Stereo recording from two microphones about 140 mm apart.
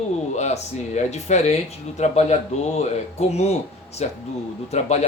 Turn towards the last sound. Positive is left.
turn(degrees=55)  # may be behind; listen again after turning